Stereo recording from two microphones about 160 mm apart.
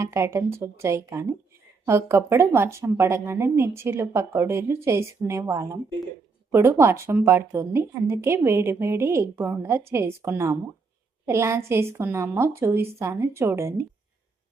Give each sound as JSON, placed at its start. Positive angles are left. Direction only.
{"t": 0.0, "sound": "speech", "side_deg": -20}